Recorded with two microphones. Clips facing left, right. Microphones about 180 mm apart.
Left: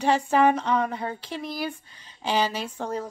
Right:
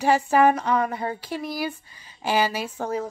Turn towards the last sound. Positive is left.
turn(degrees=-5)  # may be behind; listen again after turning